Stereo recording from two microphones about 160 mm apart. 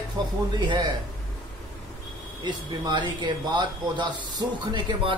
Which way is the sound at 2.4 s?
30° right (ahead or behind).